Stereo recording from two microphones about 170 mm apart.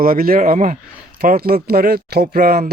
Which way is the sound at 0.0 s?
55° right (ahead or behind).